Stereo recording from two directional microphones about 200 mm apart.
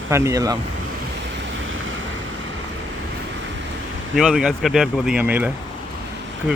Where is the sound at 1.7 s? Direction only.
75° right (ahead or behind).